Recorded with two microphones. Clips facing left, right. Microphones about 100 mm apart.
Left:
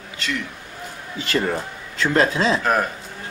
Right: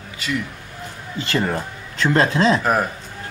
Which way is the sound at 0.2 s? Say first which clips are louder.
Right 2 dB; 10° right (ahead or behind).